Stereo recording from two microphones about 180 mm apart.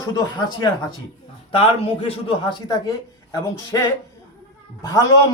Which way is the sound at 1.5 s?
30° left (ahead or behind).